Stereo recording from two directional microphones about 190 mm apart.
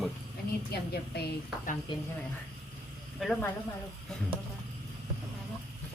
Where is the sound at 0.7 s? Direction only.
55° left (ahead or behind).